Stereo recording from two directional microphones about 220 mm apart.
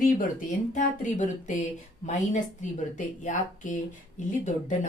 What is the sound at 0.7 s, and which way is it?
Speech, 35° left (ahead or behind).